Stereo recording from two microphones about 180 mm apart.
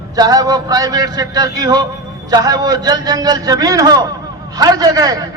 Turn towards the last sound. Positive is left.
turn(degrees=-20)  # may be behind; listen again after turning